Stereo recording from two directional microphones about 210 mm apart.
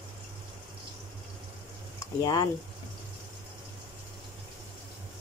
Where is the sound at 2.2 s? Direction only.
15° left (ahead or behind).